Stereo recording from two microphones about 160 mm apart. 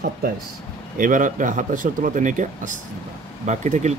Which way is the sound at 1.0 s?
55° right (ahead or behind).